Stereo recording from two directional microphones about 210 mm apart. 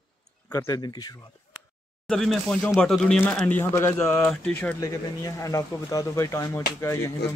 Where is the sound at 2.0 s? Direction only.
Centre (ahead or behind).